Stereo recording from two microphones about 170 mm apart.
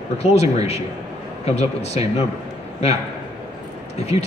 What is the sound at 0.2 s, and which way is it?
A man's voice, 40° left (ahead or behind).